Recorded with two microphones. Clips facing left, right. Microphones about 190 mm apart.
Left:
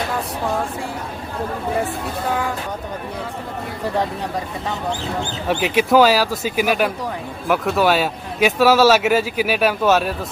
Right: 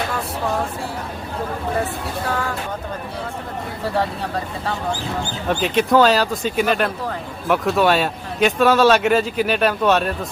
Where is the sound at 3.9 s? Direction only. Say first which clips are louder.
Even; 15° left (ahead or behind).